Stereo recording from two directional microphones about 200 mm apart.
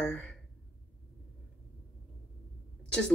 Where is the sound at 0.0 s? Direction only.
5° left (ahead or behind).